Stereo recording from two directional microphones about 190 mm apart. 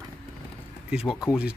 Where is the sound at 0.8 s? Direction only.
5° right (ahead or behind).